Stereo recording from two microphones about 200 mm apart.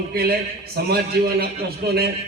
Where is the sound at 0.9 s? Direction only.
50° right (ahead or behind).